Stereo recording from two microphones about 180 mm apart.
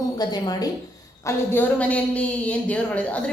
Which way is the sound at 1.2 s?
10° left (ahead or behind).